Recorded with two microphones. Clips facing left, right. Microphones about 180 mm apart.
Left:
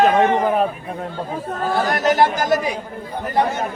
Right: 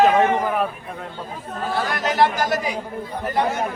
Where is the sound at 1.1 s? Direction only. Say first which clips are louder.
Left 6 dB; 45° left (ahead or behind).